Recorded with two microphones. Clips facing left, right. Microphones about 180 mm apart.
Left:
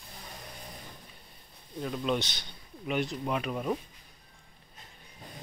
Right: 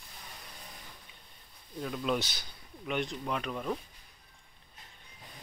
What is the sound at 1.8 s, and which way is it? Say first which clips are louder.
Speech: left 2 dB; centre (ahead or behind).